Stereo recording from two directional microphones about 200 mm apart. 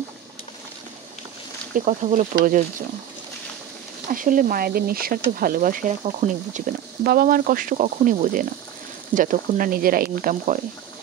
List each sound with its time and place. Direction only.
1.9 s speech: 35° right (ahead or behind)
4.1 s speech: 40° right (ahead or behind)